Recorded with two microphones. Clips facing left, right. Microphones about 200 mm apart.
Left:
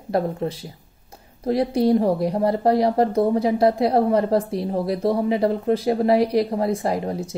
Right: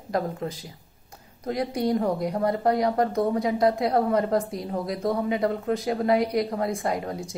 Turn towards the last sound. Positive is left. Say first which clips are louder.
# left 4 dB
turn(degrees=30)  # may be behind; listen again after turning